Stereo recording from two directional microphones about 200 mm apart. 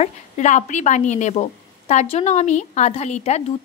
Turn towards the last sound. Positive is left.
turn(degrees=35)  # may be behind; listen again after turning